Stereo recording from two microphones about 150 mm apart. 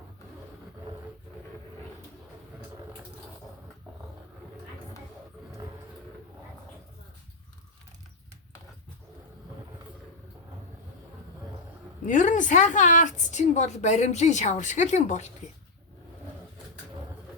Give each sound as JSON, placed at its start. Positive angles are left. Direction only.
{"t": 12.0, "sound": "a woman's voice", "side_deg": 60}